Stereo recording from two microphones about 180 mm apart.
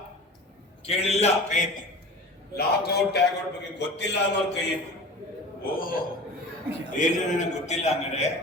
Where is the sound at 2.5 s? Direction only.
65° left (ahead or behind).